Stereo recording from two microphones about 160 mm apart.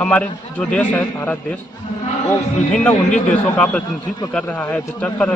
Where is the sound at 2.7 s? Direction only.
10° left (ahead or behind).